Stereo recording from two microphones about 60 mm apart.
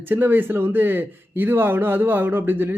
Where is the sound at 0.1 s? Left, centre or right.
Right.